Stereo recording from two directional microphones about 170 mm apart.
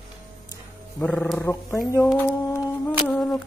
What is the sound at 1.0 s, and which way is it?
Speech, 5° left (ahead or behind).